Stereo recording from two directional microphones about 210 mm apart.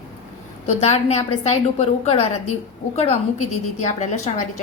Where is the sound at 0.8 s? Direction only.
30° left (ahead or behind).